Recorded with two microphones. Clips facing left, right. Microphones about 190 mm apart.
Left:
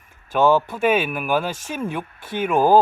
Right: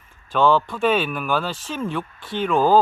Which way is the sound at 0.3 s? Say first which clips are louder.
Left 1 dB; 10° left (ahead or behind).